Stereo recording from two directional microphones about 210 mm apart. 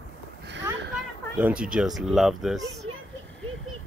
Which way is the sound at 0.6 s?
5° right (ahead or behind).